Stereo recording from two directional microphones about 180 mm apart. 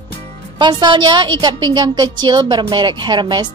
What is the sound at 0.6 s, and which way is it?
A woman's voice, 25° right (ahead or behind).